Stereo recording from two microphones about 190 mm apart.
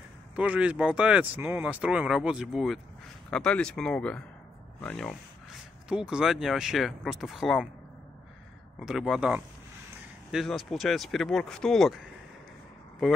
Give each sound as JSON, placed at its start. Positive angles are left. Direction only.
{"t": 0.4, "sound": "speech", "side_deg": -5}
{"t": 8.7, "sound": "speech", "side_deg": 0}